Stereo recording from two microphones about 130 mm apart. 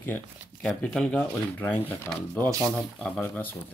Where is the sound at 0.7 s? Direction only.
5° left (ahead or behind).